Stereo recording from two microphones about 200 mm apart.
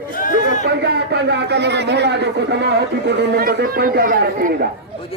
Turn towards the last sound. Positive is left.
turn(degrees=-45)  # may be behind; listen again after turning